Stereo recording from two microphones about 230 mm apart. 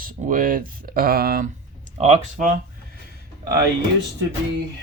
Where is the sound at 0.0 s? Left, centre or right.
Right.